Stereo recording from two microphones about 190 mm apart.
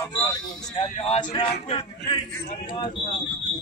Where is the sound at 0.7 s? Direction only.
35° left (ahead or behind).